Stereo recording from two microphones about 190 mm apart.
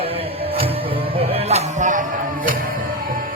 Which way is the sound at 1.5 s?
40° right (ahead or behind).